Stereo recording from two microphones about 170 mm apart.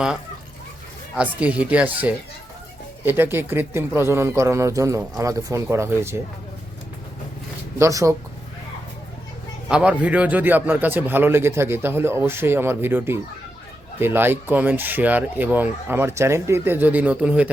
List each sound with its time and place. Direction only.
1.1 s a man's voice: 5° right (ahead or behind)
7.8 s speech: 20° right (ahead or behind)
9.6 s a man's voice: 5° right (ahead or behind)